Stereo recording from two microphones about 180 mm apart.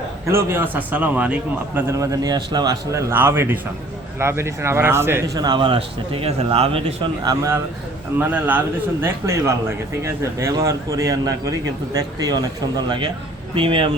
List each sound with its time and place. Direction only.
0.3 s a man's voice: 15° right (ahead or behind)
13.6 s speech: 30° right (ahead or behind)